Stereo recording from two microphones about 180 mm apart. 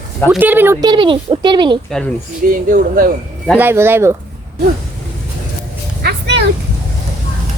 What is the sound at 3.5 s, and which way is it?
Speech, 10° right (ahead or behind).